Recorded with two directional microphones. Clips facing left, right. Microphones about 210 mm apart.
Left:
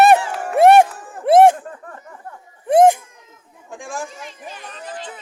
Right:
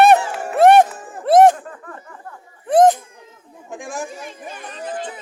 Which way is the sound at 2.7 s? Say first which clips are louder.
Left 1 dB; 10° left (ahead or behind).